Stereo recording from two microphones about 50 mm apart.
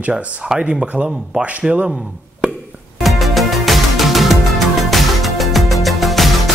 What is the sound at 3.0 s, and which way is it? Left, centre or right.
Music, centre.